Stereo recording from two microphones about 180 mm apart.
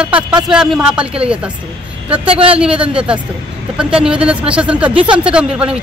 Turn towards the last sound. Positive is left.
turn(degrees=-5)  # may be behind; listen again after turning